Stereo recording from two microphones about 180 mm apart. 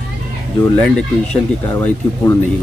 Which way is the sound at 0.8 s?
5° left (ahead or behind).